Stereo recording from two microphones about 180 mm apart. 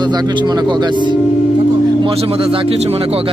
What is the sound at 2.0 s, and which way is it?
Speech, 35° right (ahead or behind).